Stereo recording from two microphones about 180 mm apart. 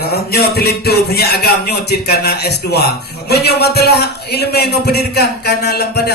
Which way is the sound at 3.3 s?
65° left (ahead or behind).